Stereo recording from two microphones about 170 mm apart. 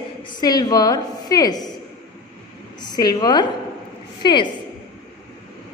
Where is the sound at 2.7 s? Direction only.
25° left (ahead or behind).